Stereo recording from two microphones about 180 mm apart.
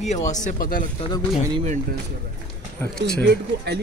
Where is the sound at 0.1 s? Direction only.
40° left (ahead or behind).